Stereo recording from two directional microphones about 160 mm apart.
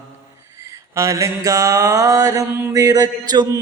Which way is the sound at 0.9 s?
20° right (ahead or behind).